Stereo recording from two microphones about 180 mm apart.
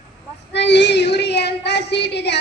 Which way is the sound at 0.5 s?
75° left (ahead or behind).